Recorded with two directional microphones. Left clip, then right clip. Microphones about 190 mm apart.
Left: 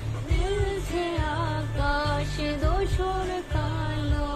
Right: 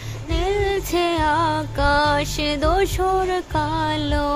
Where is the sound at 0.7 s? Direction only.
45° right (ahead or behind).